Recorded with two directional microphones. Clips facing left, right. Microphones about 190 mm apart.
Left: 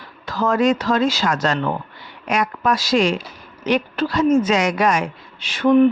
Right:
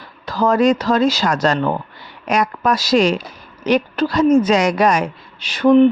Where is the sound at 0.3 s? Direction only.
35° right (ahead or behind).